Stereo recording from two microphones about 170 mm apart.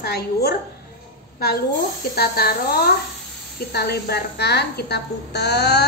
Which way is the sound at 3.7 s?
70° left (ahead or behind).